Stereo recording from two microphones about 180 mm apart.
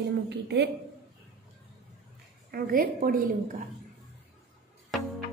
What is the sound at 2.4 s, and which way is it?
Speech, 55° right (ahead or behind).